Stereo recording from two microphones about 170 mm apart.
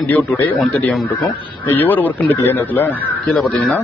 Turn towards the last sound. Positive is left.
turn(degrees=5)  # may be behind; listen again after turning